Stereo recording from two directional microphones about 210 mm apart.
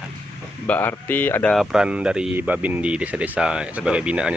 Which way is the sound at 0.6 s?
10° left (ahead or behind).